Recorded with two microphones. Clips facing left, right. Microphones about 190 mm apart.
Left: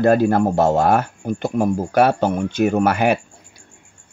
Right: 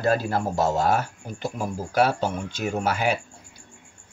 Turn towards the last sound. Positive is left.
turn(degrees=60)  # may be behind; listen again after turning